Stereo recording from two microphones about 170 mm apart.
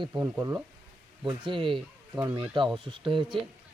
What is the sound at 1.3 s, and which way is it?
Speech, 30° right (ahead or behind).